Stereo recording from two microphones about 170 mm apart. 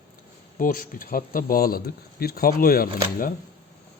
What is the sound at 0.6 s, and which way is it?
Speech, 55° left (ahead or behind).